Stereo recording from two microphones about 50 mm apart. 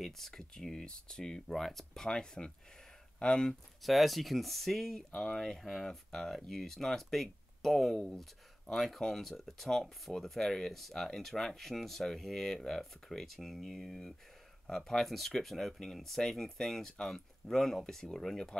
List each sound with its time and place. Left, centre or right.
0.0 s speech: centre
3.8 s speech: centre